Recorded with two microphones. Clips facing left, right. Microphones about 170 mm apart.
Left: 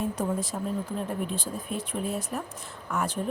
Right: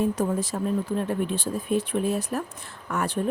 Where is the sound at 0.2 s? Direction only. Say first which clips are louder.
Right 4 dB; 75° right (ahead or behind).